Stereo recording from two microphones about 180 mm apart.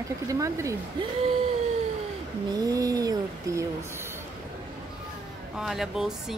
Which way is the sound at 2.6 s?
20° right (ahead or behind).